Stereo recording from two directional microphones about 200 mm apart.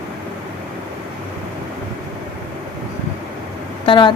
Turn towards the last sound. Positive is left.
turn(degrees=25)  # may be behind; listen again after turning